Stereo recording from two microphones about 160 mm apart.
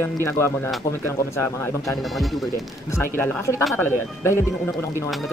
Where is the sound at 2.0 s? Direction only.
Centre (ahead or behind).